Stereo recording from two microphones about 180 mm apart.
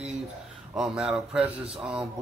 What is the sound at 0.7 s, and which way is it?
Speech, centre (ahead or behind).